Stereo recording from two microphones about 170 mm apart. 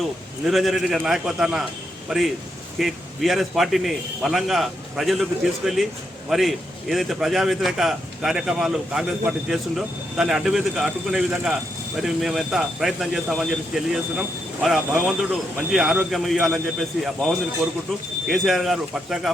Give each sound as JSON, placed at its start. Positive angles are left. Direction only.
{"t": 0.0, "sound": "a man's voice", "side_deg": 0}